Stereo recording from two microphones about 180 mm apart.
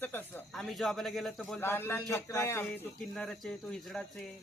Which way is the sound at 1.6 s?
10° left (ahead or behind).